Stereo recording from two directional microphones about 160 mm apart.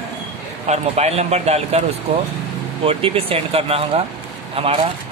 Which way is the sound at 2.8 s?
35° right (ahead or behind).